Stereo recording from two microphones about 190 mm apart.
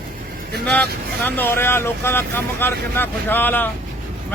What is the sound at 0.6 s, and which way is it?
Speech, 5° left (ahead or behind).